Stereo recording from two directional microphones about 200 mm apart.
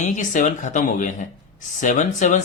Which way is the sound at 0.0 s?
40° left (ahead or behind).